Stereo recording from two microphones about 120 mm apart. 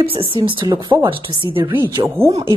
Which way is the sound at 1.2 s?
45° right (ahead or behind).